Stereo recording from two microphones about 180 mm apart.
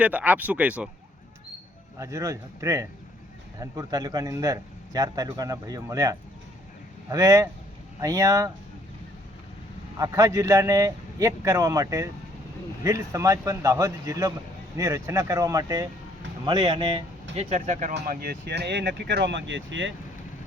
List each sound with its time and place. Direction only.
0.0 s speech: 10° right (ahead or behind)
2.0 s a man's voice: 15° right (ahead or behind)
10.0 s a man's voice: 20° right (ahead or behind)
17.3 s speech: 40° right (ahead or behind)
17.9 s speech: 55° right (ahead or behind); by 19.9 s 90° right